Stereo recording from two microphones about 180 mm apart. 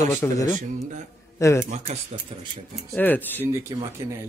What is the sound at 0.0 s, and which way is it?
A man's voice, 15° left (ahead or behind).